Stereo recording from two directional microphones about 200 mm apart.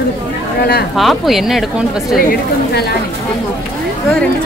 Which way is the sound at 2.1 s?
50° left (ahead or behind).